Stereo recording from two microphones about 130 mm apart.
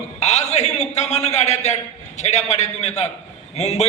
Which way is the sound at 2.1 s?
60° left (ahead or behind).